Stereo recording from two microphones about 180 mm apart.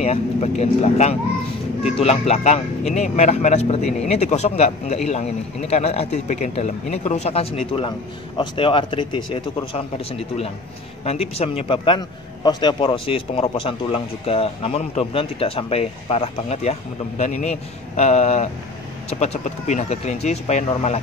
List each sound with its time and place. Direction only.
0.0 s a man's voice: 35° left (ahead or behind)